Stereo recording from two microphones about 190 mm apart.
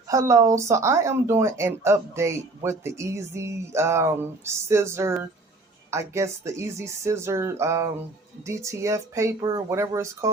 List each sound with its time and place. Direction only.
0.1 s speech: 15° right (ahead or behind)